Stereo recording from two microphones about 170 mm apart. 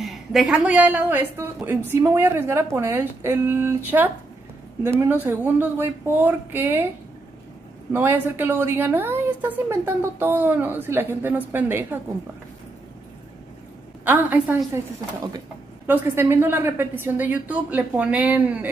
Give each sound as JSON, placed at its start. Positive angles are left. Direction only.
{"t": 0.0, "sound": "a woman's voice", "side_deg": 0}
{"t": 7.9, "sound": "a woman's voice", "side_deg": -10}
{"t": 14.0, "sound": "a woman's voice", "side_deg": -10}
{"t": 15.9, "sound": "a woman's voice", "side_deg": -15}